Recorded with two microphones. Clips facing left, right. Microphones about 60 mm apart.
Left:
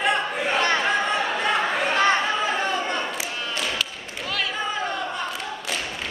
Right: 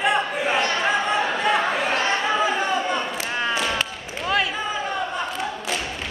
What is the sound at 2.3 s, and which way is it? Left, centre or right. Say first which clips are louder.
Chatter: right 2 dB; centre.